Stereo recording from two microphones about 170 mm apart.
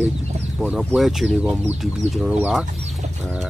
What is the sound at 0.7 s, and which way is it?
Speech, centre (ahead or behind).